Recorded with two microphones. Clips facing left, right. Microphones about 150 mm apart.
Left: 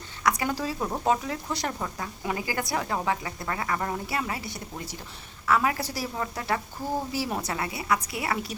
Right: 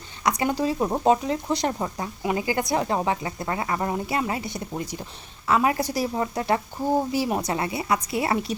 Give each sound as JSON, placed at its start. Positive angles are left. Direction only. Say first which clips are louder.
{"t": 0.2, "sound": "speech", "louder": "right 3 dB", "side_deg": -20}